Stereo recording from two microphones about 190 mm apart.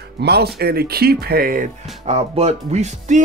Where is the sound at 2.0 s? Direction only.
35° right (ahead or behind).